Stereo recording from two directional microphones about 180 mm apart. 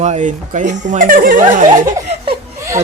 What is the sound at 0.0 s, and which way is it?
Speech, 40° right (ahead or behind).